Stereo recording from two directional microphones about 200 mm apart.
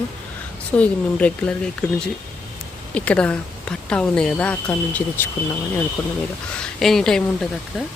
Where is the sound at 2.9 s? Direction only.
5° left (ahead or behind).